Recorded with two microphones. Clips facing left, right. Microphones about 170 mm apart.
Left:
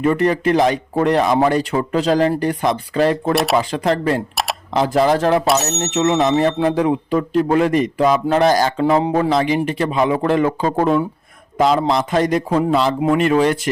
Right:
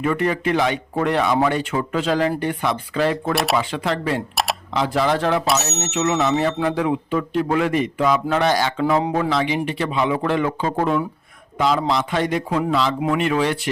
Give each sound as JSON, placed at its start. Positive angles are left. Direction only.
{"t": 0.0, "sound": "speech", "side_deg": 35}
{"t": 8.8, "sound": "speech", "side_deg": 30}